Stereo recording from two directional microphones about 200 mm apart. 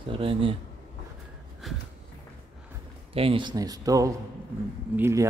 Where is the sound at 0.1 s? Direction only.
25° right (ahead or behind).